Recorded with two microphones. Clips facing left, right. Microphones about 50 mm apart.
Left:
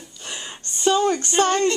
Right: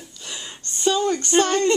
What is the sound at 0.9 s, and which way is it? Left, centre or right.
Speech, left.